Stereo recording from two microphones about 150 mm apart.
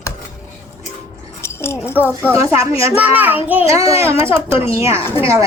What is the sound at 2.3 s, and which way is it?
A child's voice, 20° right (ahead or behind).